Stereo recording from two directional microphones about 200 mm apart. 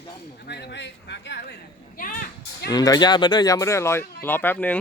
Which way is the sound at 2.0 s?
45° left (ahead or behind).